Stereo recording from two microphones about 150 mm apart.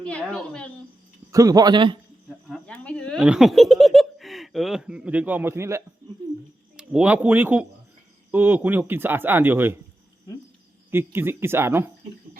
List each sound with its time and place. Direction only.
0.0 s speech: 10° left (ahead or behind)
1.3 s a man's voice: 20° right (ahead or behind)
2.5 s a sound: 5° left (ahead or behind)
3.2 s speech: 5° right (ahead or behind)
6.7 s speech: 5° right (ahead or behind)
10.9 s speech: 15° right (ahead or behind)